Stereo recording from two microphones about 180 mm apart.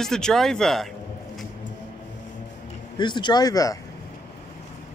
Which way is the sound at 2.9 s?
25° left (ahead or behind).